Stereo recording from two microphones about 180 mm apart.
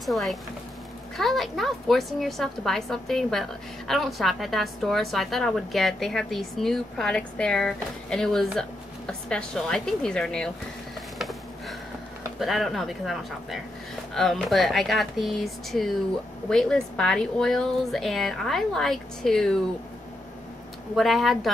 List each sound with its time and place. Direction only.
0.0 s a woman's voice: centre (ahead or behind)
11.1 s a sound: centre (ahead or behind)
12.4 s a woman's voice: centre (ahead or behind)
20.9 s a woman's voice: centre (ahead or behind)